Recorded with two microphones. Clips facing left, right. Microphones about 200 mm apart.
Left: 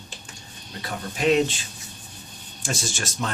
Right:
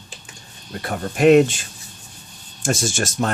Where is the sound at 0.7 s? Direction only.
55° right (ahead or behind).